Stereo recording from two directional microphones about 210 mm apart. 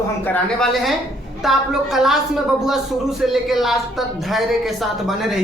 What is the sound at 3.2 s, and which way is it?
A man's voice, centre (ahead or behind).